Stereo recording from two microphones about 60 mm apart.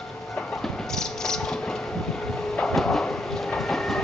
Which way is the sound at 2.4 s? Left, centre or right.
Centre.